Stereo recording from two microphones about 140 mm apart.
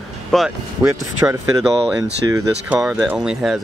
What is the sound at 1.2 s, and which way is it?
Speech, 20° right (ahead or behind).